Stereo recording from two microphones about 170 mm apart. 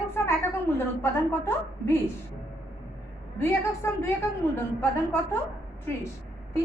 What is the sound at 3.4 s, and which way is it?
A woman's voice, 15° left (ahead or behind).